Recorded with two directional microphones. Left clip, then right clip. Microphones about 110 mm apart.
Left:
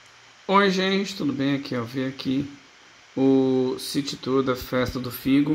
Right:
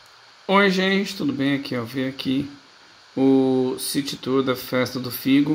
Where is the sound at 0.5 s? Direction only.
15° right (ahead or behind).